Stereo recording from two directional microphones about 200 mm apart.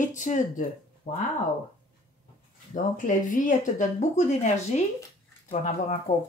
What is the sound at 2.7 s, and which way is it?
Speech, 40° left (ahead or behind).